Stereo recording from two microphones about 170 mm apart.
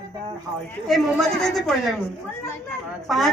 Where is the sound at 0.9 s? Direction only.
Centre (ahead or behind).